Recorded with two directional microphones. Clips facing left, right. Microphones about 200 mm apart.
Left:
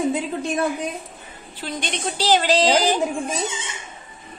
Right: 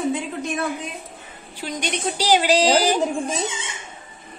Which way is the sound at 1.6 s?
10° right (ahead or behind).